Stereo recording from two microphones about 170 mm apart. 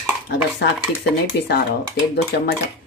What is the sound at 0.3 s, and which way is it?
Speech, 85° left.